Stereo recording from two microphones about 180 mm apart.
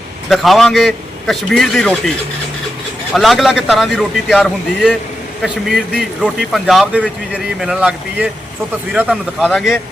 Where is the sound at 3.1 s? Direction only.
Centre (ahead or behind).